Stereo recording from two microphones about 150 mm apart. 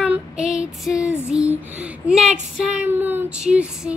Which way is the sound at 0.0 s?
5° right (ahead or behind).